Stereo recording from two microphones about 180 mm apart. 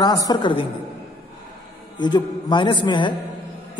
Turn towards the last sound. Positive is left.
turn(degrees=25)  # may be behind; listen again after turning